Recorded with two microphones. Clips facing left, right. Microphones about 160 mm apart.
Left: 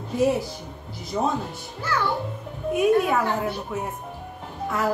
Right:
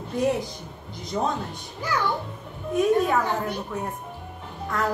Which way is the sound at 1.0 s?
5° left (ahead or behind).